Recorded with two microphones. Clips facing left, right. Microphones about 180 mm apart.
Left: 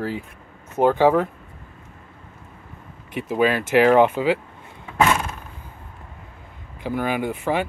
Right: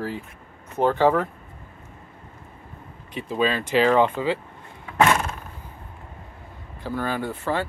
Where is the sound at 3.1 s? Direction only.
10° left (ahead or behind).